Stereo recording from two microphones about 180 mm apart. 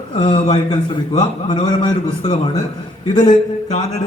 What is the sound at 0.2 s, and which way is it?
A man's voice, 25° left (ahead or behind).